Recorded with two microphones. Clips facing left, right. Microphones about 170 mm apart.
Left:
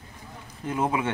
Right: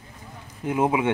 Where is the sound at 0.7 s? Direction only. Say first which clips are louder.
Right 4 dB; 15° right (ahead or behind).